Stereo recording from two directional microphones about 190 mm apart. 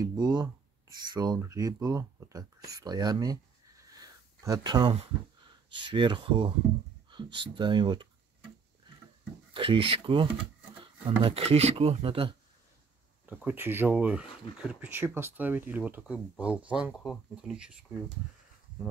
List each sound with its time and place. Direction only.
0.0 s speech: 20° right (ahead or behind)
3.9 s a sound: 20° right (ahead or behind)
5.7 s speech: 25° right (ahead or behind)
9.5 s speech: 25° right (ahead or behind)
13.2 s speech: 10° right (ahead or behind)